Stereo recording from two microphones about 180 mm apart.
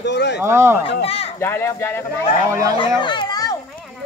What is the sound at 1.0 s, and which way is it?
Speech, 35° left (ahead or behind).